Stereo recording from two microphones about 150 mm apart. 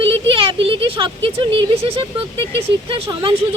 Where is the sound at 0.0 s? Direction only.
35° right (ahead or behind).